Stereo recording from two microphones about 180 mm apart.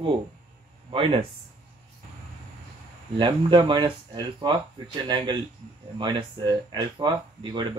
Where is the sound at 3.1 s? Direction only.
25° right (ahead or behind).